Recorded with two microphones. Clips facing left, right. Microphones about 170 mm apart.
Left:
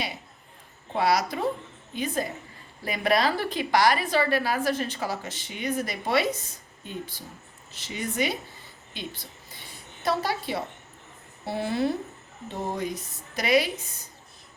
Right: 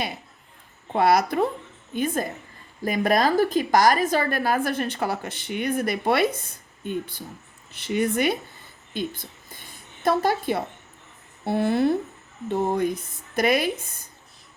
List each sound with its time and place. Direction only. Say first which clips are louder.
0.9 s a woman's voice: right 5 dB; 55° right (ahead or behind)